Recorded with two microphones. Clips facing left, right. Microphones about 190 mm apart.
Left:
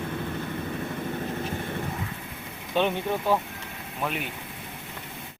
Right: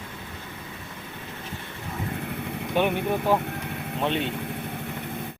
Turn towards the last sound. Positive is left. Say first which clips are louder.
# right 5 dB
turn(degrees=-30)  # may be behind; listen again after turning